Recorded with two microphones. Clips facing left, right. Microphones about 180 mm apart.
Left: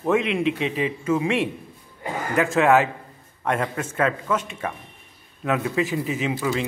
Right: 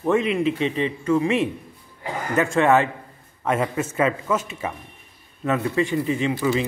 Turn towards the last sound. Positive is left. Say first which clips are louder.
# right 3 dB
turn(degrees=0)  # may be behind; listen again after turning